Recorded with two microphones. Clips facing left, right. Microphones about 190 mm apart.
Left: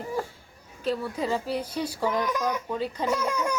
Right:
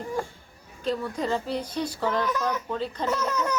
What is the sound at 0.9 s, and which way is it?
A child's voice, 5° left (ahead or behind).